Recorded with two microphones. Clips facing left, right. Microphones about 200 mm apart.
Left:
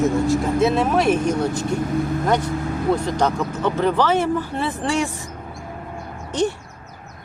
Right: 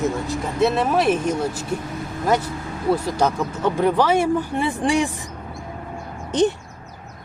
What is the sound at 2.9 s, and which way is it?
Speech, 5° right (ahead or behind).